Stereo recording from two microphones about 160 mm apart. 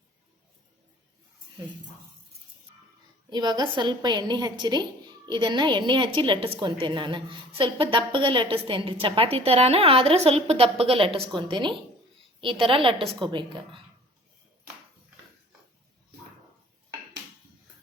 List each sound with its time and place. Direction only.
3.2 s a woman's voice: 25° right (ahead or behind)